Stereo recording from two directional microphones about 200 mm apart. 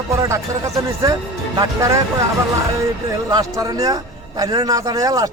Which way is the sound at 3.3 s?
20° right (ahead or behind).